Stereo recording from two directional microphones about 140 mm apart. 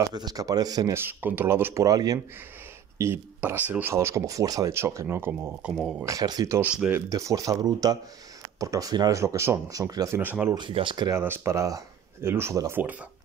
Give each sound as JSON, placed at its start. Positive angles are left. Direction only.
{"t": 0.0, "sound": "speech", "side_deg": -30}
{"t": 5.8, "sound": "speech", "side_deg": -5}
{"t": 6.0, "sound": "speech", "side_deg": -25}
{"t": 6.6, "sound": "speech", "side_deg": -10}
{"t": 7.1, "sound": "speech", "side_deg": -25}
{"t": 10.5, "sound": "speech", "side_deg": -35}
{"t": 11.1, "sound": "speech", "side_deg": -15}